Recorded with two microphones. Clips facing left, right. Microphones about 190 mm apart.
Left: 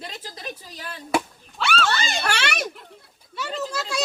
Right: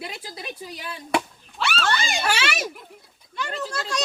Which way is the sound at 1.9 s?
10° right (ahead or behind).